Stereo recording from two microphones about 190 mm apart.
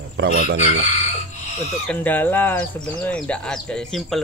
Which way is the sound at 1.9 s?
10° left (ahead or behind).